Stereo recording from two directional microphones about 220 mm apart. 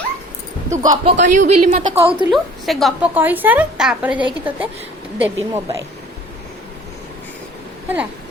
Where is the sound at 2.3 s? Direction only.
Centre (ahead or behind).